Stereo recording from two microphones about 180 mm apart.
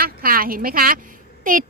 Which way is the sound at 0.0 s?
55° right (ahead or behind).